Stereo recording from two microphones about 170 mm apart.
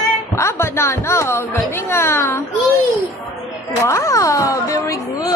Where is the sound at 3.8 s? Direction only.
15° left (ahead or behind).